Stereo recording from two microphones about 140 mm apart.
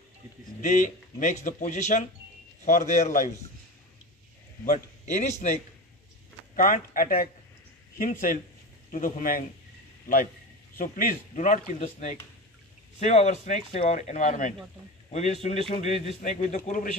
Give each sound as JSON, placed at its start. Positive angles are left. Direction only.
{"t": 0.6, "sound": "speech", "side_deg": 65}
{"t": 4.6, "sound": "a man's voice", "side_deg": 55}
{"t": 6.5, "sound": "speech", "side_deg": 75}
{"t": 10.8, "sound": "speech", "side_deg": 80}